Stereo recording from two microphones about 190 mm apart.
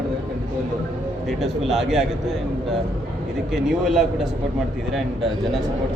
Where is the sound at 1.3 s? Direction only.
Centre (ahead or behind).